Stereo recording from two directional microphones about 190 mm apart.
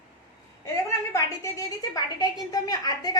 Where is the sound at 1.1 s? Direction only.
15° left (ahead or behind).